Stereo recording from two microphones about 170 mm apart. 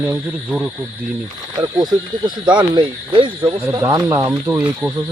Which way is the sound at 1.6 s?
25° right (ahead or behind).